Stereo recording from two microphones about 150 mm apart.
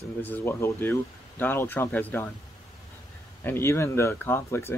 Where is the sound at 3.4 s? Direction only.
15° left (ahead or behind).